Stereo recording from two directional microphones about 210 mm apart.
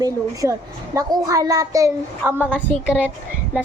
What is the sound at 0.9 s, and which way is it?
Speech, 20° right (ahead or behind).